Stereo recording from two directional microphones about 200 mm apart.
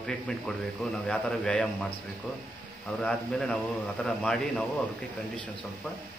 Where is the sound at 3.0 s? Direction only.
5° left (ahead or behind).